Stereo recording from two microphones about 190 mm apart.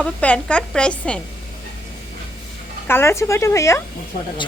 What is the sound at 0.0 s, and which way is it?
Speech, 5° left (ahead or behind).